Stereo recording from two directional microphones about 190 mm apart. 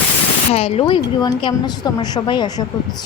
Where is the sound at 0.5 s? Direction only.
30° left (ahead or behind).